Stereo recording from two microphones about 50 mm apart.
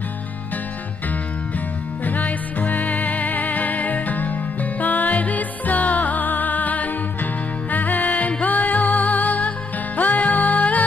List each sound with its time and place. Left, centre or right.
2.0 s music: left